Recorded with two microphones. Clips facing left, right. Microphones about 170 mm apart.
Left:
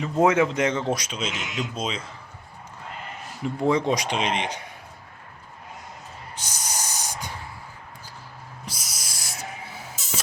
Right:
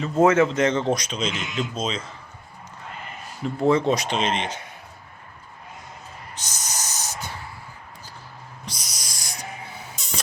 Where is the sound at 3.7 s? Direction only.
15° left (ahead or behind).